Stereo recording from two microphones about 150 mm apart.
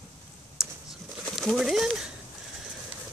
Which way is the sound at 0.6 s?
5° right (ahead or behind).